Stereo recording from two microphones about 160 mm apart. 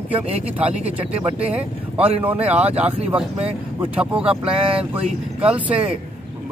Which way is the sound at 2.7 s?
40° right (ahead or behind).